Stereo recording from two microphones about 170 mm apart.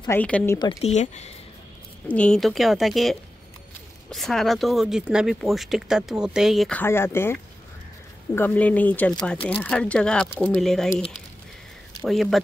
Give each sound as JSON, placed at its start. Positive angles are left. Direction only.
{"t": 0.1, "sound": "speech", "side_deg": 10}
{"t": 0.6, "sound": "speech", "side_deg": 35}
{"t": 2.0, "sound": "speech", "side_deg": 5}
{"t": 6.8, "sound": "speech", "side_deg": 15}
{"t": 8.4, "sound": "speech", "side_deg": 10}
{"t": 12.0, "sound": "speech", "side_deg": 0}